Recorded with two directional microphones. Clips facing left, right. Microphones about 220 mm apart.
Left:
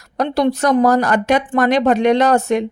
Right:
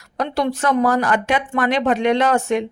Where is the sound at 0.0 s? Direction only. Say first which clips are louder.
Left 5 dB; 40° left (ahead or behind).